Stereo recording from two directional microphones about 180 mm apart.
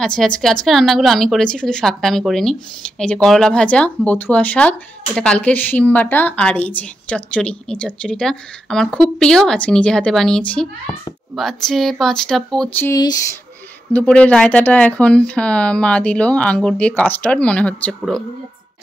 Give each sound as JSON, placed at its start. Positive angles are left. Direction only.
{"t": 0.0, "sound": "a woman's voice", "side_deg": 5}
{"t": 13.9, "sound": "speech", "side_deg": 5}